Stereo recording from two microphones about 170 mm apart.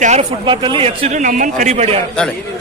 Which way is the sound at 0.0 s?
40° right (ahead or behind).